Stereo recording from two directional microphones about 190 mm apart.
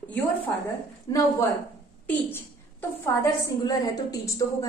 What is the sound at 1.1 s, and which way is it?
Speech, 20° left (ahead or behind).